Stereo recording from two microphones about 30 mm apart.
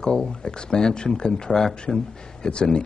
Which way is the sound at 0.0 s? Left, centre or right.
Left.